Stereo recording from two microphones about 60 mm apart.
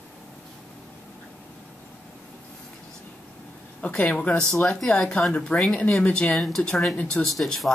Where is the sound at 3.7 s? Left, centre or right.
Left.